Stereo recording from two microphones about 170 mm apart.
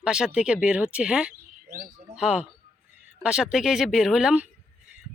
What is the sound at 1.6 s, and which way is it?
Speech, 55° right (ahead or behind).